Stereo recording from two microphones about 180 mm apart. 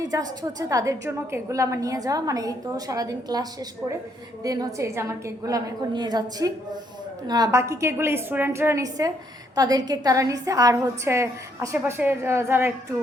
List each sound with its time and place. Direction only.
0.0 s a woman's voice: 20° right (ahead or behind)